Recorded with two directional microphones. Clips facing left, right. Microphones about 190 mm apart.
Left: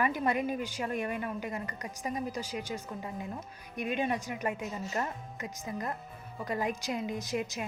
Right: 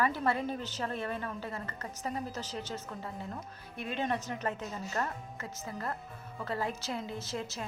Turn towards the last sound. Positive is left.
turn(degrees=15)  # may be behind; listen again after turning